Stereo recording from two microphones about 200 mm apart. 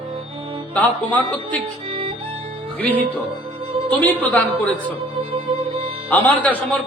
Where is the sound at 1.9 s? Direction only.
25° right (ahead or behind).